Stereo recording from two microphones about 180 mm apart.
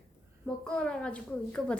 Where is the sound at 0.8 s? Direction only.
5° left (ahead or behind).